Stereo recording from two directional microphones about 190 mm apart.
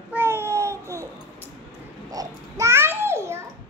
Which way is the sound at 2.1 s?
15° right (ahead or behind).